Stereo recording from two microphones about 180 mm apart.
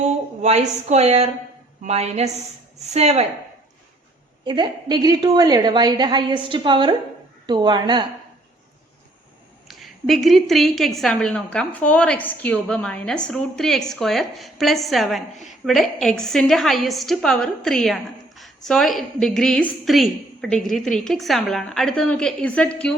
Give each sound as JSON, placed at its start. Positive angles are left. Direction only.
{"t": 0.4, "sound": "a woman's voice", "side_deg": -40}
{"t": 4.4, "sound": "a woman's voice", "side_deg": -25}
{"t": 9.6, "sound": "a woman's voice", "side_deg": 0}